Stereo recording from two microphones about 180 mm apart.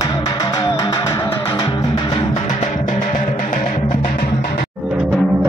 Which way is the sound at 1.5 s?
25° left (ahead or behind).